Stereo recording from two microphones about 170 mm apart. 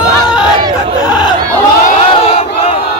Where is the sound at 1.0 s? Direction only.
25° left (ahead or behind).